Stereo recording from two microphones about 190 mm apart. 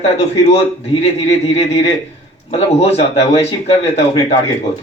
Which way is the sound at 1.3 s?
30° left (ahead or behind).